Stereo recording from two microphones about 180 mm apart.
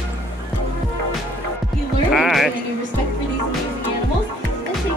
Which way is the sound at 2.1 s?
Centre (ahead or behind).